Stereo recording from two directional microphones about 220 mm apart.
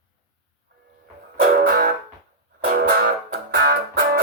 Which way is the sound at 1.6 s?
45° right (ahead or behind).